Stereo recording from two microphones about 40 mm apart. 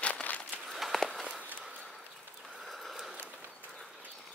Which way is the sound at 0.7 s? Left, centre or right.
Centre.